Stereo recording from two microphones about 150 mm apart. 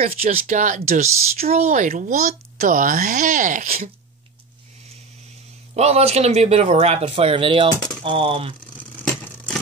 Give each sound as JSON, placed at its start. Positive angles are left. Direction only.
{"t": 0.0, "sound": "speech", "side_deg": -40}
{"t": 0.4, "sound": "a child's voice", "side_deg": -55}
{"t": 1.5, "sound": "a child's voice", "side_deg": -50}
{"t": 5.8, "sound": "speech", "side_deg": -45}
{"t": 8.7, "sound": "a sound", "side_deg": 5}